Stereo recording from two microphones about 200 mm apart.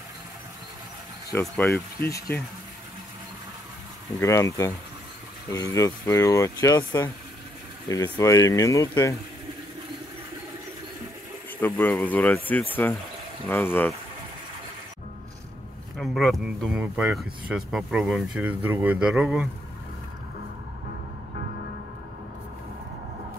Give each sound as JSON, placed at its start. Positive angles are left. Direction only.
{"t": 1.4, "sound": "speech", "side_deg": 10}
{"t": 4.2, "sound": "speech", "side_deg": 15}
{"t": 11.6, "sound": "speech", "side_deg": 10}
{"t": 16.0, "sound": "speech", "side_deg": 0}